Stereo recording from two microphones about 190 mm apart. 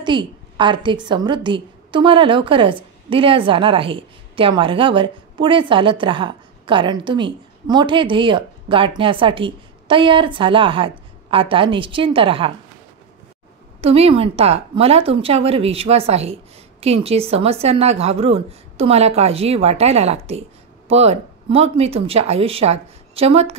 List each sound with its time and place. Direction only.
0.0 s speech: 25° right (ahead or behind)
13.7 s a woman's voice: 30° right (ahead or behind)